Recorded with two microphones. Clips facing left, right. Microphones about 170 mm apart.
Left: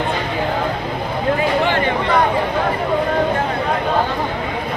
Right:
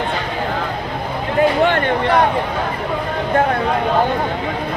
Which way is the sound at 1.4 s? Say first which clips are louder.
Right 7 dB; 55° right (ahead or behind).